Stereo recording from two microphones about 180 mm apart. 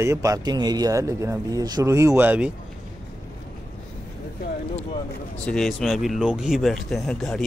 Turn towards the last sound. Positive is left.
turn(degrees=5)  # may be behind; listen again after turning